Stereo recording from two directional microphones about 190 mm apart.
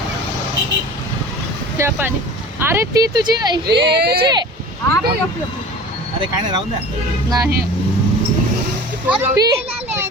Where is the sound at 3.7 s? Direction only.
60° right (ahead or behind).